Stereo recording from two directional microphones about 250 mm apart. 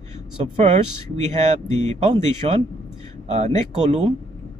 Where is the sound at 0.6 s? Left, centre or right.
Right.